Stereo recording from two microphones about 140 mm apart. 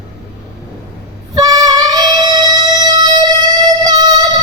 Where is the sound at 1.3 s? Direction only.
25° right (ahead or behind).